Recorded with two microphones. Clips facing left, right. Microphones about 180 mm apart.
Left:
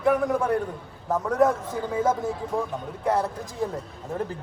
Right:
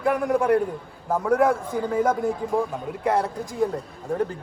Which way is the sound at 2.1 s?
5° left (ahead or behind).